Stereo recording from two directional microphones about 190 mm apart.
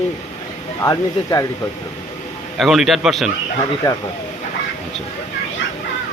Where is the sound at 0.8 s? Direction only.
20° left (ahead or behind).